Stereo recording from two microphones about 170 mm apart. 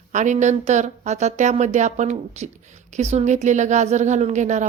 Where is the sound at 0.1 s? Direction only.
45° right (ahead or behind).